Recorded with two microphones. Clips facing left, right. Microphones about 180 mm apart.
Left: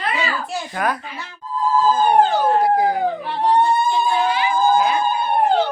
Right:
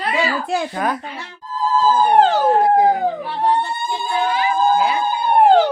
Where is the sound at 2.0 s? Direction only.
90° right.